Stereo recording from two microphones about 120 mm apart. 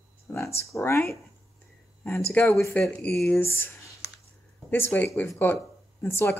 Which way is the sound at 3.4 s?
20° left (ahead or behind).